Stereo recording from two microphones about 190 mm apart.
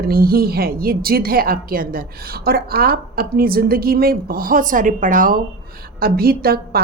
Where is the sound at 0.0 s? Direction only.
50° right (ahead or behind).